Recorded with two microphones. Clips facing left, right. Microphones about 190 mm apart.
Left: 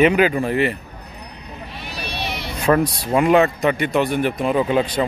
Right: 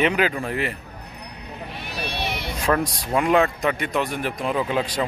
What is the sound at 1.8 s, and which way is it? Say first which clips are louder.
Vehicle: even; 50° right (ahead or behind).